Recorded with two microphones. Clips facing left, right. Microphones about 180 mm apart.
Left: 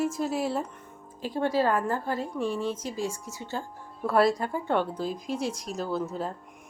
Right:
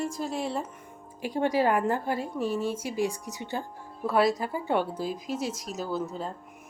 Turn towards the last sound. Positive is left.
turn(degrees=0)  # may be behind; listen again after turning